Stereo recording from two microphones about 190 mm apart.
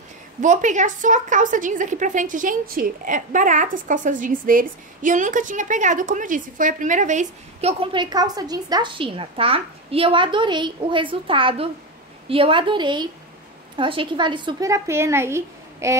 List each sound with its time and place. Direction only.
0.4 s a woman's voice: 40° right (ahead or behind); by 16.0 s 15° right (ahead or behind)